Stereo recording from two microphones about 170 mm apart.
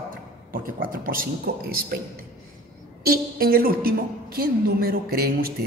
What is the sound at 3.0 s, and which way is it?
A woman's voice, 60° right (ahead or behind).